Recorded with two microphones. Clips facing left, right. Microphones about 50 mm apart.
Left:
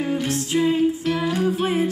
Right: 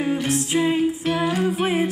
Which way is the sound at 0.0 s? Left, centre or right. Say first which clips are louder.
Right 1 dB; centre.